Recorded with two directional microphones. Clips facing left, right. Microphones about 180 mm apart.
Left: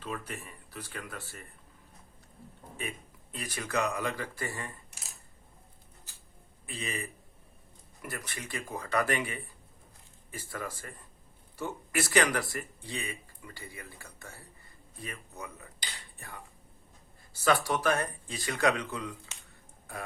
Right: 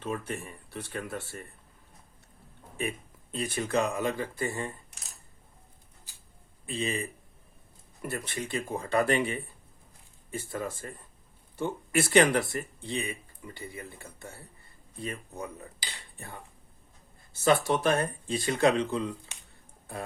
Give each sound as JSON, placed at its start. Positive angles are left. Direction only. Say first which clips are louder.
{"t": 0.0, "sound": "speech", "louder": "right 5 dB", "side_deg": -25}
{"t": 3.3, "sound": "speech", "louder": "right 5 dB", "side_deg": -25}
{"t": 6.7, "sound": "speech", "louder": "right 6 dB", "side_deg": -25}
{"t": 10.5, "sound": "speech", "louder": "right 3 dB", "side_deg": -25}